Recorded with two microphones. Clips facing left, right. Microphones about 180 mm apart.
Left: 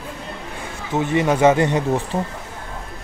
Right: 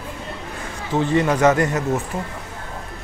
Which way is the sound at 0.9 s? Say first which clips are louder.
Even; 15° left (ahead or behind).